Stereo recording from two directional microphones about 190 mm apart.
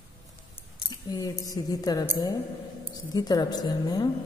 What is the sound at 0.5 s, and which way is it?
Speech, 20° left (ahead or behind).